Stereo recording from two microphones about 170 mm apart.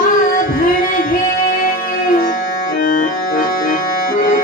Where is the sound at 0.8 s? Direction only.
55° left (ahead or behind).